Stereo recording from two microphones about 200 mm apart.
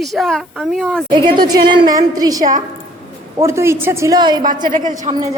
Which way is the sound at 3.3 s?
15° right (ahead or behind).